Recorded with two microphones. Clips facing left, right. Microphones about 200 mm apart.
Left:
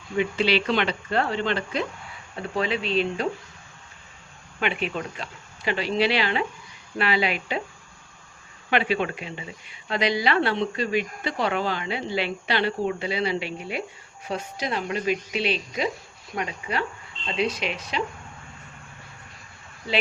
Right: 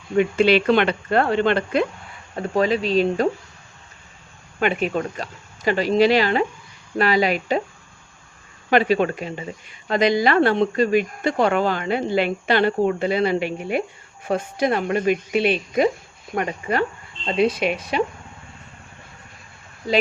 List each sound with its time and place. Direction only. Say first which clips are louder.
0.2 s speech: right 6 dB; 50° right (ahead or behind)
2.3 s speech: right 7 dB; 45° right (ahead or behind)
4.6 s speech: right 6 dB; 45° right (ahead or behind)
8.7 s speech: right 6 dB; 40° right (ahead or behind)